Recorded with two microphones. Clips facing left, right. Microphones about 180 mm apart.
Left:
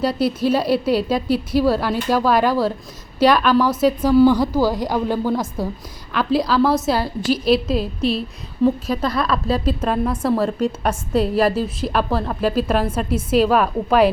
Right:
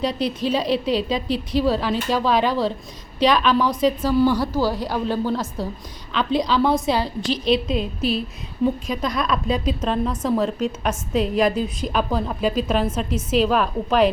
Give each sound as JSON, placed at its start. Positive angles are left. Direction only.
{"t": 0.0, "sound": "a woman's voice", "side_deg": 5}
{"t": 9.0, "sound": "a woman's voice", "side_deg": -15}
{"t": 9.5, "sound": "a woman's voice", "side_deg": 5}